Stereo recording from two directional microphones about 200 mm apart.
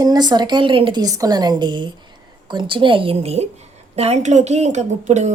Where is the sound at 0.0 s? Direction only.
20° right (ahead or behind).